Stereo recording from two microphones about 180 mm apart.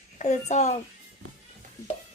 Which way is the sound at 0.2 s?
40° left (ahead or behind).